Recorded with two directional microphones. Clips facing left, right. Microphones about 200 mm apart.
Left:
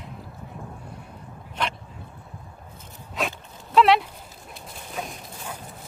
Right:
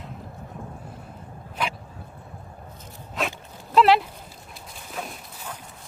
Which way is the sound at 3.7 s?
Centre (ahead or behind).